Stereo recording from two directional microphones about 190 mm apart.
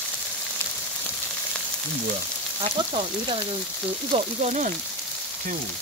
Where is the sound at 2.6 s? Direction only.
30° right (ahead or behind).